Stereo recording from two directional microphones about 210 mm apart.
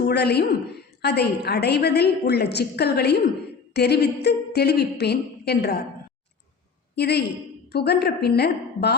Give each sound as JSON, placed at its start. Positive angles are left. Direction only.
{"t": 0.1, "sound": "a woman's voice", "side_deg": 50}
{"t": 6.9, "sound": "a woman's voice", "side_deg": 50}